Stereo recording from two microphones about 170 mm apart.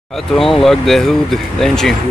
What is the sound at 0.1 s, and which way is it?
Speech, centre (ahead or behind).